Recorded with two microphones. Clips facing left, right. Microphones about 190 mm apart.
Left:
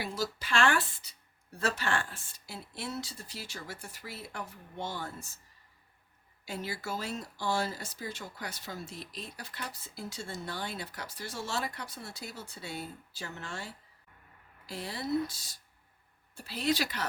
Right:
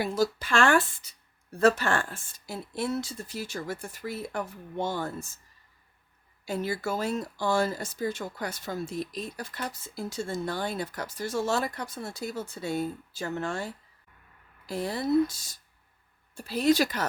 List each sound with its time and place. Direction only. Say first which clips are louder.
0.0 s speech: right 8 dB; 50° right (ahead or behind)
6.4 s speech: right 8 dB; 45° right (ahead or behind)
14.7 s speech: right 7 dB; 50° right (ahead or behind)